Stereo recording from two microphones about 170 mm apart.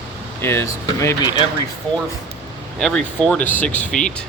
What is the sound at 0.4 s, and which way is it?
Speech, 15° left (ahead or behind).